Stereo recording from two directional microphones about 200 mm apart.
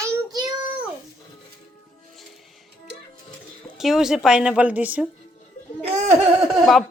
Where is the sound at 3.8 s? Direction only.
Centre (ahead or behind).